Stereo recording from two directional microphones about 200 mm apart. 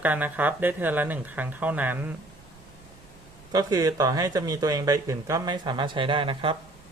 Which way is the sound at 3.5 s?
20° right (ahead or behind).